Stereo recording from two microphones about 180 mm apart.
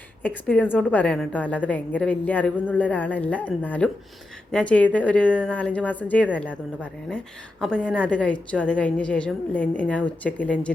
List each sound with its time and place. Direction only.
0.2 s a woman's voice: 5° left (ahead or behind)
7.6 s a woman's voice: 5° left (ahead or behind)